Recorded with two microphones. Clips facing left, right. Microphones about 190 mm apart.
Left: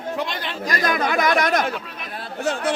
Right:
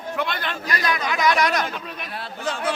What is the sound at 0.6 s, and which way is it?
Speech, 50° left (ahead or behind).